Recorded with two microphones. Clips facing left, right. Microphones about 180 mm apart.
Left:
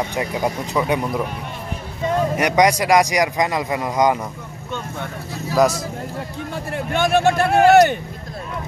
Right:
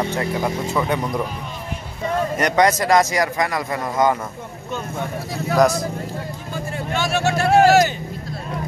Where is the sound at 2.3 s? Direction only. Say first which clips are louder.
Even; 10° left (ahead or behind).